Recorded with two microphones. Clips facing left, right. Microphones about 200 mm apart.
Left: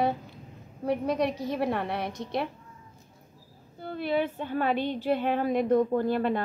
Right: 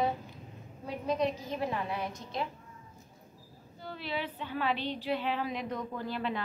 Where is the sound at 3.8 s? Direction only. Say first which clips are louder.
Left 9 dB; 55° left (ahead or behind).